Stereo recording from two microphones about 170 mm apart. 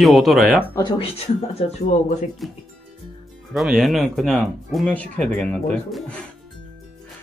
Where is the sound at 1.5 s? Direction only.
40° left (ahead or behind).